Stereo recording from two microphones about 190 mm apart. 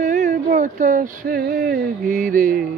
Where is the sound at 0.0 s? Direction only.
40° right (ahead or behind).